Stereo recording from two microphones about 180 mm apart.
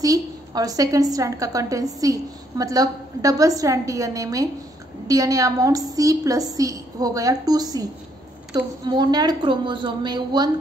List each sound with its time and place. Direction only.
0.0 s a woman's voice: 20° right (ahead or behind)